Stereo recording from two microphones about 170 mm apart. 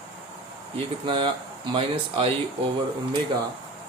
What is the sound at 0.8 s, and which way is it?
Speech, 30° right (ahead or behind).